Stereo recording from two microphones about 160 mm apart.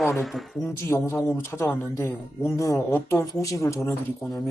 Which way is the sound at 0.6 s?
15° left (ahead or behind).